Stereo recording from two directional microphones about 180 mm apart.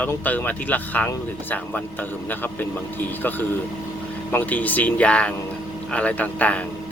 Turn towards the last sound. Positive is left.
turn(degrees=10)  # may be behind; listen again after turning